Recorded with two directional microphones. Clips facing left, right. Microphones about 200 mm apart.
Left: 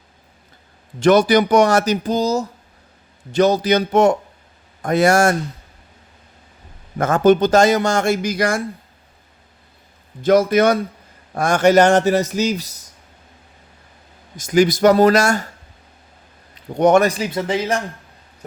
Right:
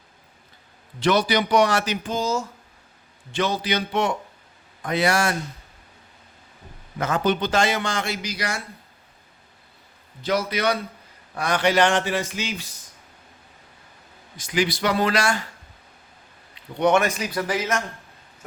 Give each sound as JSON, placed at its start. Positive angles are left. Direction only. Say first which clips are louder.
{"t": 0.9, "sound": "a man's voice", "louder": "left 8 dB", "side_deg": 50}
{"t": 7.0, "sound": "a man's voice", "louder": "left 9 dB", "side_deg": 45}
{"t": 10.2, "sound": "a man's voice", "louder": "left 11 dB", "side_deg": 50}
{"t": 14.3, "sound": "a man's voice", "louder": "left 9 dB", "side_deg": 45}
{"t": 16.6, "sound": "a man's voice", "louder": "left 6 dB", "side_deg": 45}